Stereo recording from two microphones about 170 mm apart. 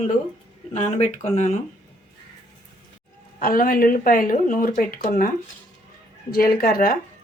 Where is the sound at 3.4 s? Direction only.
55° left (ahead or behind).